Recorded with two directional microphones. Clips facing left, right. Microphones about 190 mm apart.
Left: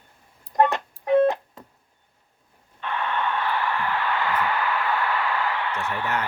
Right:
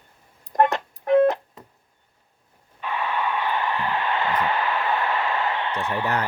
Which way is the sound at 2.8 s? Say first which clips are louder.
Right 1 dB; 10° right (ahead or behind).